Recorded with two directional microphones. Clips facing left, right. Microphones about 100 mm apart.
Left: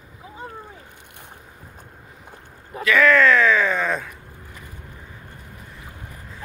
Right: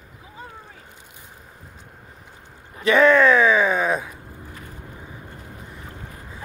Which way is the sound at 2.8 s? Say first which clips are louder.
Right 1 dB; 25° right (ahead or behind).